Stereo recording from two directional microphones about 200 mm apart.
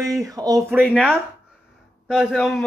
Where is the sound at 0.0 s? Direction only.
15° right (ahead or behind).